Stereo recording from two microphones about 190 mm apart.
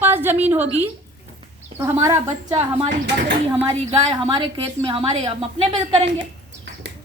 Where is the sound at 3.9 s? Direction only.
30° right (ahead or behind).